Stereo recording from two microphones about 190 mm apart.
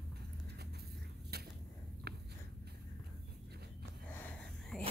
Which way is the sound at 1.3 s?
55° right (ahead or behind).